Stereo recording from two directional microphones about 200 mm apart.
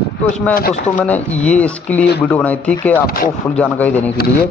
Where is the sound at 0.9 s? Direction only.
5° left (ahead or behind).